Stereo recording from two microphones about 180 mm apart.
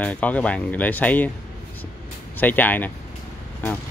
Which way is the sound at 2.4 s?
10° left (ahead or behind).